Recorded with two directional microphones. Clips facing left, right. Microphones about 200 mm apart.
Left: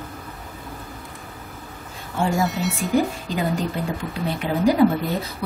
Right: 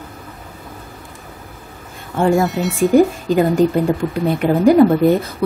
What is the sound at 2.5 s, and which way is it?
Speech, centre (ahead or behind).